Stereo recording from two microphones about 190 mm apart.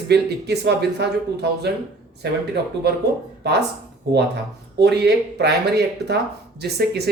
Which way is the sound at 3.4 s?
60° right (ahead or behind).